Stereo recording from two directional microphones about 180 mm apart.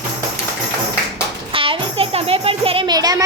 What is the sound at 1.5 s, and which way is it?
Music, 30° right (ahead or behind).